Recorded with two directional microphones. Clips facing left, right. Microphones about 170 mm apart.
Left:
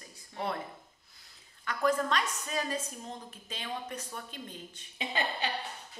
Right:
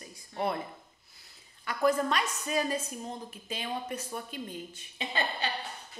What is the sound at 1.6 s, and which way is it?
Speech, 10° right (ahead or behind).